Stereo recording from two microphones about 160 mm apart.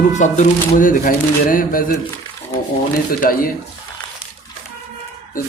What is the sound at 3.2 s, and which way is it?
Speech, 60° left (ahead or behind).